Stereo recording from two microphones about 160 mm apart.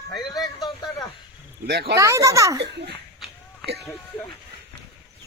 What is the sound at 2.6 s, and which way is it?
Speech, 90° right.